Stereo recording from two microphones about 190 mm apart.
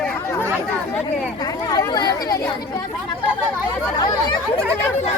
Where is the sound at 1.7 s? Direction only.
20° left (ahead or behind).